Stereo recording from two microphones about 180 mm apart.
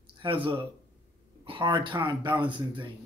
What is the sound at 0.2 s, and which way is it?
Speech, 30° right (ahead or behind).